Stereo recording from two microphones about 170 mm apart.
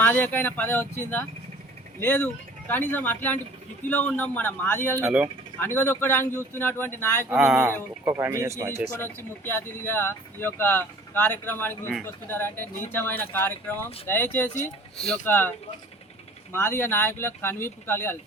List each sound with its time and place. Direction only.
0.0 s speech: 10° left (ahead or behind)
5.0 s speech: 5° right (ahead or behind)
5.5 s speech: 10° left (ahead or behind)
7.3 s speech: 5° right (ahead or behind)
8.0 s speech: 15° right (ahead or behind)
9.0 s speech: 15° left (ahead or behind)